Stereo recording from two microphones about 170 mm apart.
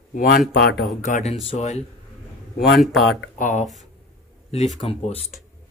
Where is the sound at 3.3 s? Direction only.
50° left (ahead or behind).